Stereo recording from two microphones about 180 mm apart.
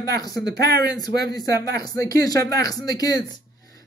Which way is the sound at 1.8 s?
20° left (ahead or behind).